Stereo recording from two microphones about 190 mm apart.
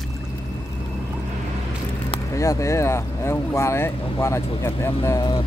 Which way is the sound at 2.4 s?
15° left (ahead or behind).